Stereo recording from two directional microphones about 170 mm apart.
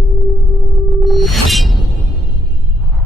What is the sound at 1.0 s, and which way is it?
Music, centre (ahead or behind).